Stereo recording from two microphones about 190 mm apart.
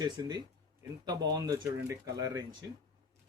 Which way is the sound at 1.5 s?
15° right (ahead or behind).